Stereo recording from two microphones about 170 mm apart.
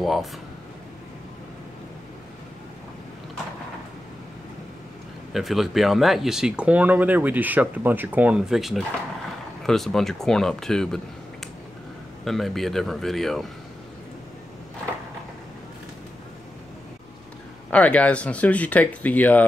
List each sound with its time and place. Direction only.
0.0 s speech: centre (ahead or behind)
5.3 s speech: centre (ahead or behind)
12.3 s speech: centre (ahead or behind)
17.6 s speech: 10° left (ahead or behind)